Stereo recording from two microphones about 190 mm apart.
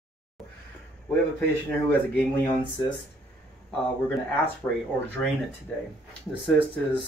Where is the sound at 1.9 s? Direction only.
10° left (ahead or behind).